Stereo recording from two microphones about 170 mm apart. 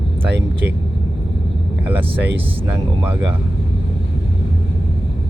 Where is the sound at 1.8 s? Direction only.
10° right (ahead or behind).